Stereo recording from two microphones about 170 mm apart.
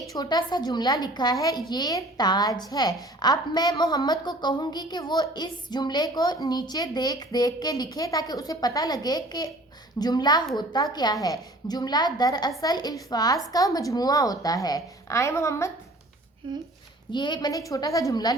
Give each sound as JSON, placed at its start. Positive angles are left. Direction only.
{"t": 0.1, "sound": "a child's voice", "side_deg": 25}
{"t": 17.1, "sound": "a child's voice", "side_deg": 25}